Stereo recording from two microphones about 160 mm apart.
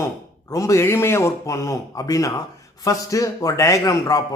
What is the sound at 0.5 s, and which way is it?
Speech, 20° left (ahead or behind).